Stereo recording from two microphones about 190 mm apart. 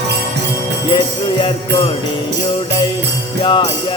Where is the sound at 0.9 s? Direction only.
25° left (ahead or behind).